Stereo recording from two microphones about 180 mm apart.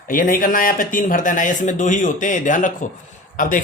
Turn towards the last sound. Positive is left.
turn(degrees=50)  # may be behind; listen again after turning